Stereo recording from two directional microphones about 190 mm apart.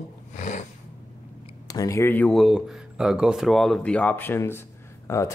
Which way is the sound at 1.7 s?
15° left (ahead or behind).